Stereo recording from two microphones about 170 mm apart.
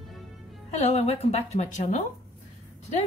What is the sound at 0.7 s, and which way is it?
Speech, 40° left (ahead or behind).